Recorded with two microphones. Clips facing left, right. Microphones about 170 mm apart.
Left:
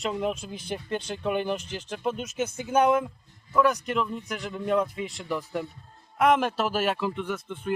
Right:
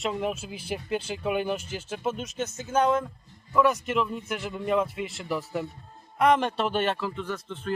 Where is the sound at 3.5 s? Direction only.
Centre (ahead or behind).